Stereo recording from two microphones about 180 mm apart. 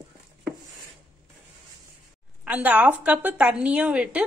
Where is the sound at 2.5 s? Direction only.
10° right (ahead or behind).